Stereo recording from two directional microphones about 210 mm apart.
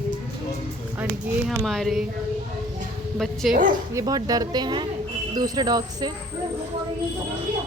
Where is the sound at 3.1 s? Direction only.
Centre (ahead or behind).